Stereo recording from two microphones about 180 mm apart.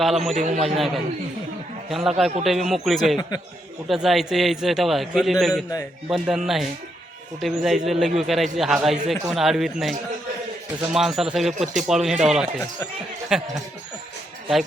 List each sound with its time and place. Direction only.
0.0 s a man's voice: centre (ahead or behind)
0.3 s a man's voice: 40° right (ahead or behind)
0.8 s a man's voice: centre (ahead or behind)
2.0 s a man's voice: centre (ahead or behind)
3.2 s a man's voice: 20° left (ahead or behind)
3.8 s a man's voice: centre (ahead or behind)